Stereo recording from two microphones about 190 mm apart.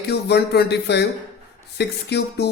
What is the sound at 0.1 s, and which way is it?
Speech, 60° left (ahead or behind).